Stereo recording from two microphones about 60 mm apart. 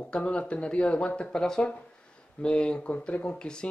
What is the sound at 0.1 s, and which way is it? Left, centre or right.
Speech, centre.